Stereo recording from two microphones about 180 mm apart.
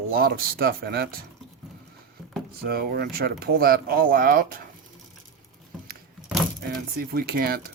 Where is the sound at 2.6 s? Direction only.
60° right (ahead or behind).